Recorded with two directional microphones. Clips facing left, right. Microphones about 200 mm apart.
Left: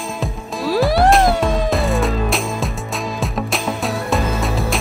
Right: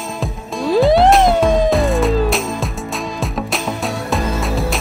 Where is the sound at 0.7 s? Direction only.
20° right (ahead or behind).